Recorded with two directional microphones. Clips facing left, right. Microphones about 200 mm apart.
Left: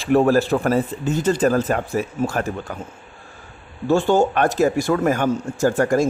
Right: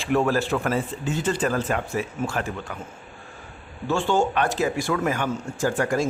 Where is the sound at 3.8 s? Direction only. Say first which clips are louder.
Left 6 dB; 40° left (ahead or behind).